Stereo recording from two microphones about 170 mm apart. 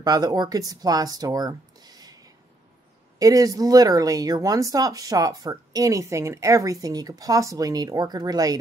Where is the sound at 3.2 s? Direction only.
20° right (ahead or behind).